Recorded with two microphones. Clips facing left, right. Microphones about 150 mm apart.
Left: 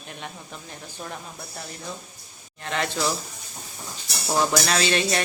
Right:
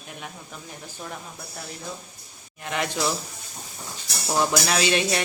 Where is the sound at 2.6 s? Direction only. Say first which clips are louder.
Even; 10° right (ahead or behind).